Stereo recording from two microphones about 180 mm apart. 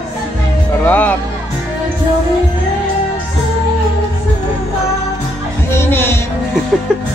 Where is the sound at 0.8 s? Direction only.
10° left (ahead or behind).